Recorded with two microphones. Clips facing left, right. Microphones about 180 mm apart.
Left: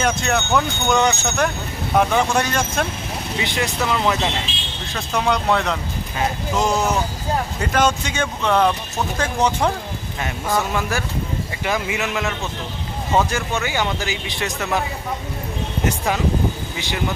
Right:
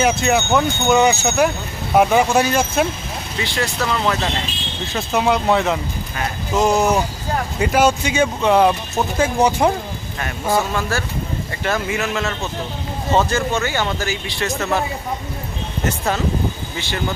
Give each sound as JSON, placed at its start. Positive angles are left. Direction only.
{"t": 0.0, "sound": "speech", "side_deg": -5}
{"t": 3.3, "sound": "speech", "side_deg": 20}
{"t": 4.9, "sound": "speech", "side_deg": -5}
{"t": 10.2, "sound": "speech", "side_deg": 15}
{"t": 16.7, "sound": "speech", "side_deg": 15}